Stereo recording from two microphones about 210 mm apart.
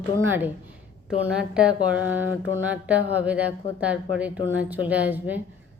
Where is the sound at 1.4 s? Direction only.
5° right (ahead or behind).